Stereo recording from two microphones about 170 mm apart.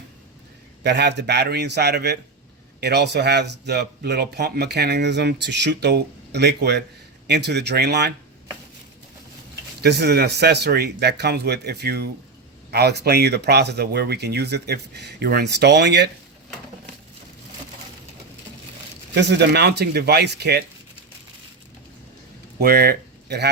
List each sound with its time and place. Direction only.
0.8 s speech: 85° right
9.8 s speech: 70° right (ahead or behind)
19.1 s speech: 85° right
22.6 s speech: 65° right (ahead or behind)